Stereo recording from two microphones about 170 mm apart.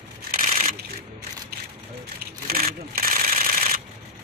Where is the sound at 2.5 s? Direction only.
60° right (ahead or behind).